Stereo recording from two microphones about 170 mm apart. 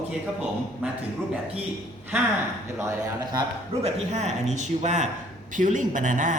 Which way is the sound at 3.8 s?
45° right (ahead or behind).